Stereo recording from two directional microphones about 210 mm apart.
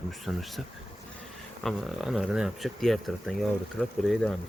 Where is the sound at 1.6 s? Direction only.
Centre (ahead or behind).